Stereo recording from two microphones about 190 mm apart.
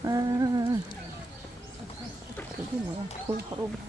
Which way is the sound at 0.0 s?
20° right (ahead or behind).